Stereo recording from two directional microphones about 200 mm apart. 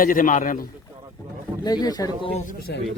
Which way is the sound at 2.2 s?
35° left (ahead or behind).